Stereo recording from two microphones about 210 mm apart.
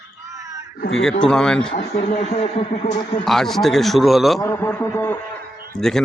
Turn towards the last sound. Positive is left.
turn(degrees=5)  # may be behind; listen again after turning